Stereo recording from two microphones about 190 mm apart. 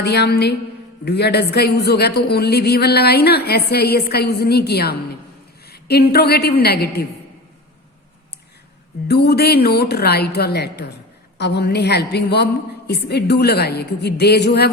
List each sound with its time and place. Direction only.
0.0 s a woman's voice: 60° left (ahead or behind)
9.0 s a woman's voice: 60° left (ahead or behind)